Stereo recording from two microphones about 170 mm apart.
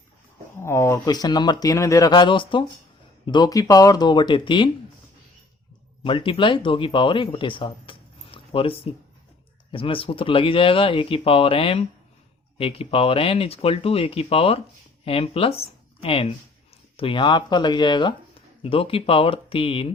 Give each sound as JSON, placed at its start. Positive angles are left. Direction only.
{"t": 0.6, "sound": "speech", "side_deg": 15}
{"t": 6.0, "sound": "speech", "side_deg": 30}